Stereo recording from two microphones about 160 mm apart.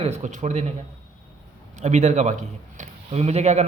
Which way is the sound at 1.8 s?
45° right (ahead or behind).